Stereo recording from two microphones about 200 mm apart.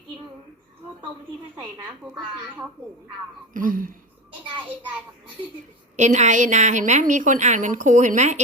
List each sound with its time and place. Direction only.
3.5 s speech: 45° right (ahead or behind)
6.0 s a woman's voice: 35° right (ahead or behind)